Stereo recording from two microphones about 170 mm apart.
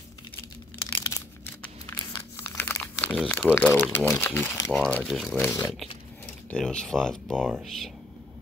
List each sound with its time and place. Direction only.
0.7 s crushing: 20° left (ahead or behind)
2.5 s crumpling: 10° left (ahead or behind)
3.5 s speech: 10° left (ahead or behind)
5.4 s speech: 15° left (ahead or behind)